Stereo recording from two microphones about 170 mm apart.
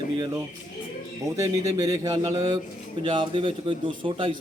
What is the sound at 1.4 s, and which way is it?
A man's voice, 20° right (ahead or behind).